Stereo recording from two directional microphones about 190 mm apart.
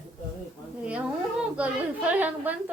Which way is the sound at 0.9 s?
5° right (ahead or behind).